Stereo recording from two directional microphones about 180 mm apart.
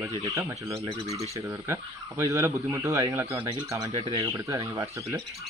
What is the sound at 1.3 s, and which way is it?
Speech, 15° right (ahead or behind).